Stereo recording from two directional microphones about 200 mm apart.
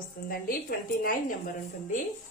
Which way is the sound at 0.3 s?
45° left (ahead or behind).